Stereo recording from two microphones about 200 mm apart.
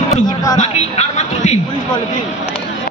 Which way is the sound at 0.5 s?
35° left (ahead or behind).